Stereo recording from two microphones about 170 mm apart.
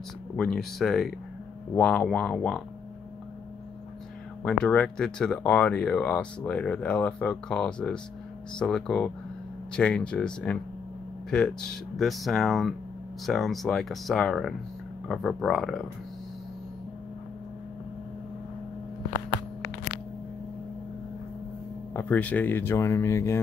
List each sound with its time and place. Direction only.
0.4 s speech: centre (ahead or behind)
4.5 s speech: 5° left (ahead or behind)
21.9 s speech: 10° left (ahead or behind)